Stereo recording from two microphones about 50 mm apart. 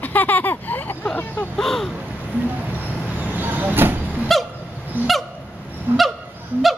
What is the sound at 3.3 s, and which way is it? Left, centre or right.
Vehicle, right.